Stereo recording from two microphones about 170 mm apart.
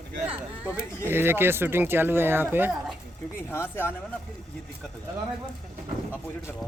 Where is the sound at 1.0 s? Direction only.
15° right (ahead or behind).